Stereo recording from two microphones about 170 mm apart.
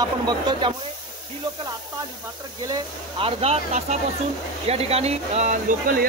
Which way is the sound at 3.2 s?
35° right (ahead or behind).